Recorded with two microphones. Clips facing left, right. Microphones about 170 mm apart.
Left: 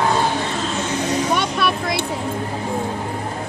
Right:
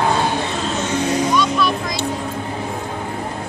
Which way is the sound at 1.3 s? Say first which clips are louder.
Right 2 dB; 60° left (ahead or behind).